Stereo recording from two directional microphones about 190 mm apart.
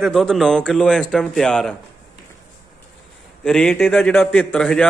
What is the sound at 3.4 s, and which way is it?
Speech, 5° left (ahead or behind).